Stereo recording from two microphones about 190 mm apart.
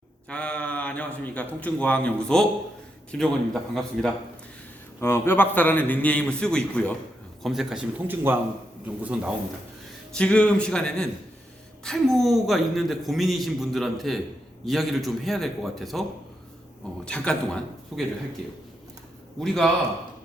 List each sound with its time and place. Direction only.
0.3 s a man's voice: 5° left (ahead or behind)
4.9 s a man's voice: 15° left (ahead or behind); by 9.3 s 5° right (ahead or behind)
10.2 s a man's voice: 5° left (ahead or behind)
17.1 s a man's voice: 5° left (ahead or behind)
19.4 s a man's voice: centre (ahead or behind)